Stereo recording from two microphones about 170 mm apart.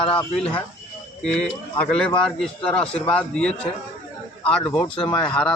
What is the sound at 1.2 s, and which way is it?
A man's voice, 5° left (ahead or behind).